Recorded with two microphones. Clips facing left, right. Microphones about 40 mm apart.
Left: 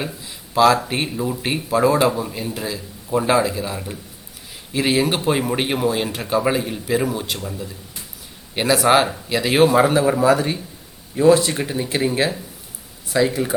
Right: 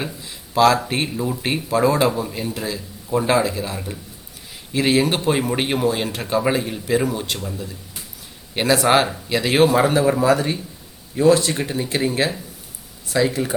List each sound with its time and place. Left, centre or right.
0.0 s speech: centre